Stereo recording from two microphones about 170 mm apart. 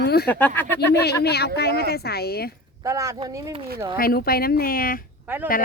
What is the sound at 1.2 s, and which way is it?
Speech, 70° left (ahead or behind).